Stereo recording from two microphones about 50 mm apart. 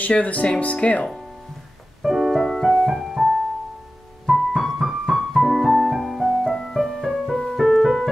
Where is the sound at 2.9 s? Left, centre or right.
Centre.